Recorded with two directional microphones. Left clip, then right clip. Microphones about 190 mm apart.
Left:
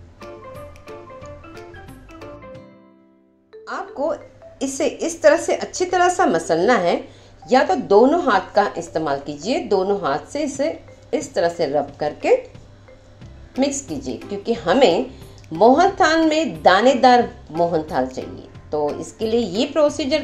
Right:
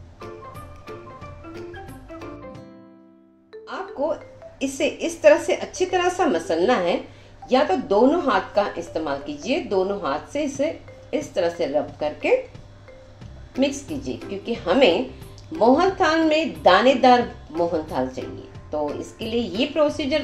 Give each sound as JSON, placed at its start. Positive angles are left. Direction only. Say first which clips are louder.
{"t": 3.6, "sound": "speech", "louder": "left 2 dB", "side_deg": 30}
{"t": 13.7, "sound": "speech", "louder": "left 2 dB", "side_deg": 30}